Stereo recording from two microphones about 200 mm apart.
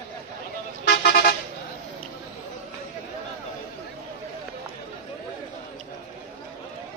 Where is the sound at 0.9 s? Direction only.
60° left (ahead or behind).